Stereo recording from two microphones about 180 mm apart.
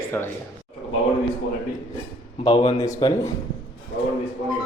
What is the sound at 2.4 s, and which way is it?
Speech, 30° left (ahead or behind).